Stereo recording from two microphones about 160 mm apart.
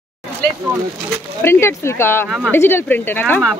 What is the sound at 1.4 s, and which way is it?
Speech, 15° left (ahead or behind).